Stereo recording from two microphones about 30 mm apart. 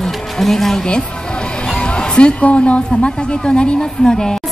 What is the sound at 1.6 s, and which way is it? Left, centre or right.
Music, left.